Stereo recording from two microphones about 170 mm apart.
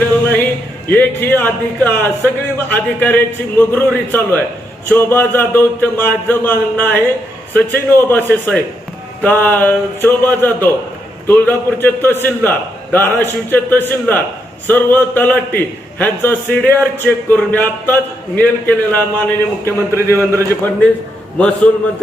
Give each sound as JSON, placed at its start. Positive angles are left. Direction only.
{"t": 0.9, "sound": "a man's voice", "side_deg": 10}
{"t": 19.6, "sound": "speech", "side_deg": -15}
{"t": 21.3, "sound": "a man's voice", "side_deg": 5}